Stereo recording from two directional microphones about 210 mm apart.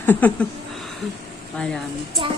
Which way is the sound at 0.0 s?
10° left (ahead or behind).